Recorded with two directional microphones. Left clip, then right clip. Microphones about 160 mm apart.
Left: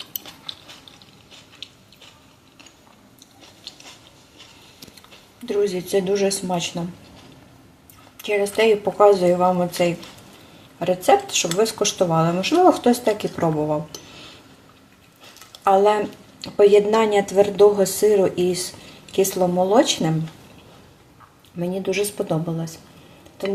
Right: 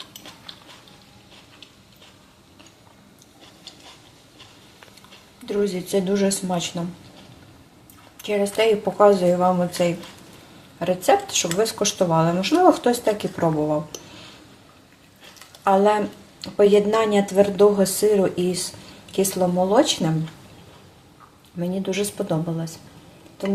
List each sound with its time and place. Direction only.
5.5 s speech: 5° left (ahead or behind)
8.2 s speech: 5° left (ahead or behind)
15.6 s speech: 5° left (ahead or behind)
21.6 s speech: 10° left (ahead or behind)